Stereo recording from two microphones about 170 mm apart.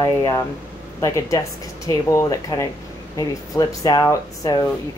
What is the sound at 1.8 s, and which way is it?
Speech, 20° left (ahead or behind).